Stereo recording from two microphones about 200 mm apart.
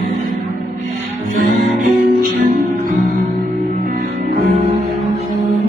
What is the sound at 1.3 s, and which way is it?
Music, 45° right (ahead or behind).